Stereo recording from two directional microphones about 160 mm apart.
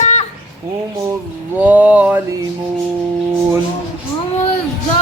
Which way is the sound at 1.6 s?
10° right (ahead or behind).